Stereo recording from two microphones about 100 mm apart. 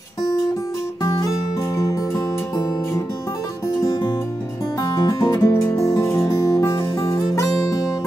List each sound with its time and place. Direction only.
1.8 s music: 35° left (ahead or behind)
4.8 s music: 40° left (ahead or behind)